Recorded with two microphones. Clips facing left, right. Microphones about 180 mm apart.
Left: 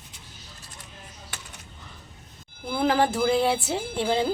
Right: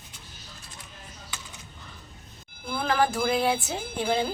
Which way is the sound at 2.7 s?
25° left (ahead or behind).